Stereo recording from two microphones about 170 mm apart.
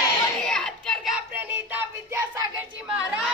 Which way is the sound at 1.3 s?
15° right (ahead or behind).